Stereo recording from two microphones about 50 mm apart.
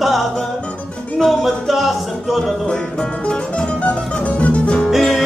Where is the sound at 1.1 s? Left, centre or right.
Centre.